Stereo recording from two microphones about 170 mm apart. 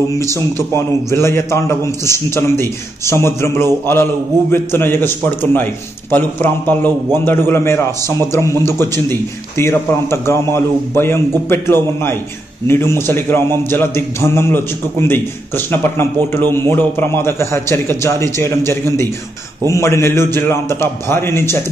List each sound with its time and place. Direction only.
0.1 s a man's voice: 15° left (ahead or behind)